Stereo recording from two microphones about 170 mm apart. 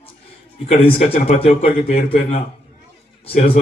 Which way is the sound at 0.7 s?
35° left (ahead or behind).